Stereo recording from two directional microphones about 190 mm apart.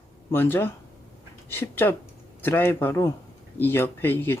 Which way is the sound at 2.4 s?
10° left (ahead or behind).